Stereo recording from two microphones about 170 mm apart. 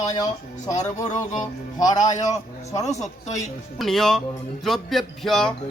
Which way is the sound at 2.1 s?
45° left (ahead or behind).